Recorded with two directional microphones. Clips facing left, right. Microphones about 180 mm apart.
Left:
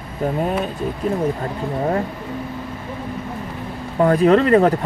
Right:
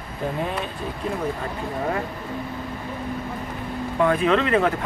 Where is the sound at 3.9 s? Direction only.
40° left (ahead or behind).